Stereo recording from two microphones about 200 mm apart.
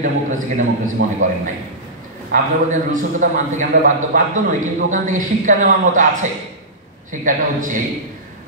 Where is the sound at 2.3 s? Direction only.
40° right (ahead or behind).